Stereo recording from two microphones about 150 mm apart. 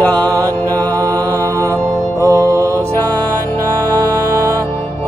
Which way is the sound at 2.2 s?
20° right (ahead or behind).